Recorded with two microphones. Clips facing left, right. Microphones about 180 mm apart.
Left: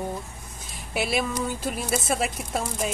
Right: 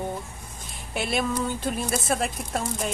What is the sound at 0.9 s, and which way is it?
Speech, 5° left (ahead or behind).